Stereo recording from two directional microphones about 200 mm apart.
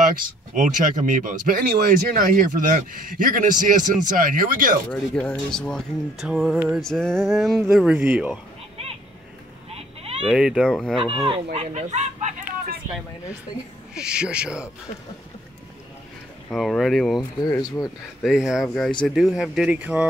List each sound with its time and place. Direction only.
0.1 s speech: 45° right (ahead or behind)
5.1 s speech: 5° left (ahead or behind)
9.7 s a sound: 30° right (ahead or behind)
10.2 s speech: 5° right (ahead or behind)
11.5 s speech: 35° right (ahead or behind)
13.9 s speech: 5° right (ahead or behind)
16.4 s speech: centre (ahead or behind)
17.5 s speech: 15° left (ahead or behind)
18.2 s speech: centre (ahead or behind)